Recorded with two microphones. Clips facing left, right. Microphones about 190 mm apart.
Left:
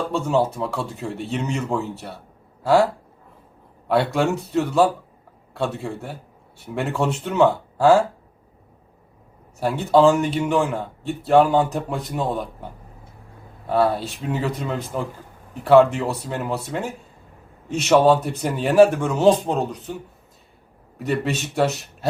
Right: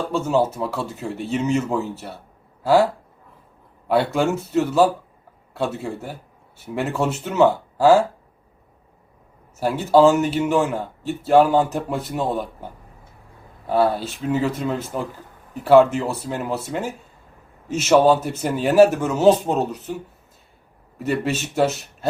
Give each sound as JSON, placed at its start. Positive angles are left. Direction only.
{"t": 0.1, "sound": "speech", "side_deg": 0}
{"t": 9.6, "sound": "speech", "side_deg": 0}
{"t": 21.0, "sound": "speech", "side_deg": 0}